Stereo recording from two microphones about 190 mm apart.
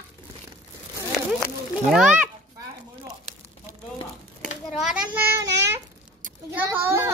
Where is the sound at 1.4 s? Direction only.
5° right (ahead or behind).